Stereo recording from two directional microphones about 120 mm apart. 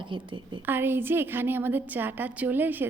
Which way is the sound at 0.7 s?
20° right (ahead or behind).